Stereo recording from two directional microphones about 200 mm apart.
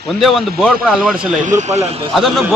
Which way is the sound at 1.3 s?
40° right (ahead or behind).